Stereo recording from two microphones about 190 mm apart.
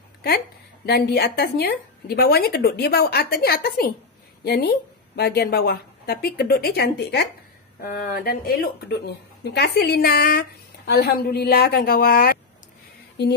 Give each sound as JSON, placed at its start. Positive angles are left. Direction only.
{"t": 0.8, "sound": "a woman's voice", "side_deg": 55}
{"t": 7.8, "sound": "a woman's voice", "side_deg": 50}
{"t": 13.2, "sound": "a woman's voice", "side_deg": 65}